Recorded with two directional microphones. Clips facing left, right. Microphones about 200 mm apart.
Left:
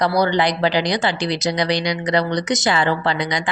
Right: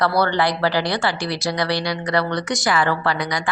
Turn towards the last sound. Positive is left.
turn(degrees=25)  # may be behind; listen again after turning